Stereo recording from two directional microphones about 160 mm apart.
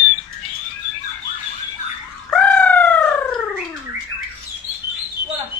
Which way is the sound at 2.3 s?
5° left (ahead or behind).